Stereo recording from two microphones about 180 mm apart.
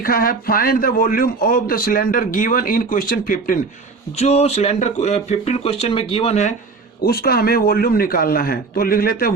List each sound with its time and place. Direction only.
0.0 s a man's voice: 55° left (ahead or behind)
4.2 s speech: 35° left (ahead or behind)
7.0 s a man's voice: 60° left (ahead or behind)